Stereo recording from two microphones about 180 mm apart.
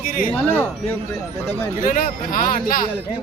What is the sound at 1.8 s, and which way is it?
Speech, 50° left (ahead or behind).